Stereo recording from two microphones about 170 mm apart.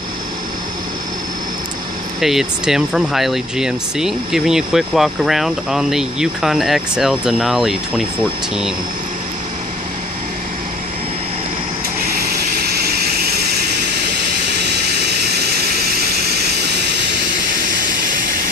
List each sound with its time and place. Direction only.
2.1 s speech: centre (ahead or behind)
12.6 s vehicle: 70° right (ahead or behind)